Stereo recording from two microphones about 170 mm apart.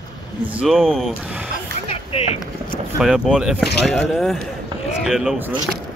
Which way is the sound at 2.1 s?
35° left (ahead or behind).